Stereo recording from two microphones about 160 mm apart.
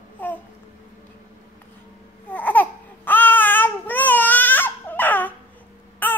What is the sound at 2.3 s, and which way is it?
Babbling, 10° left (ahead or behind).